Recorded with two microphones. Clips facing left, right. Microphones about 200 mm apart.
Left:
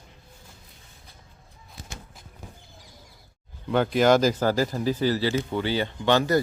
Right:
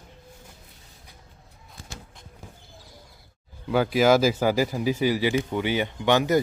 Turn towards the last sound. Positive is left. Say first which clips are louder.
# even
turn(degrees=-15)  # may be behind; listen again after turning